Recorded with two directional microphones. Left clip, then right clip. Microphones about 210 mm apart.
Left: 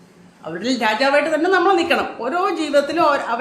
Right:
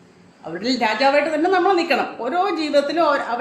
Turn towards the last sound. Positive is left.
turn(degrees=10)  # may be behind; listen again after turning